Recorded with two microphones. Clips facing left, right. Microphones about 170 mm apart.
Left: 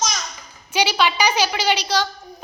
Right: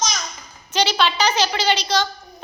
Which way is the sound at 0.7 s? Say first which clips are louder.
Even; 10° left (ahead or behind).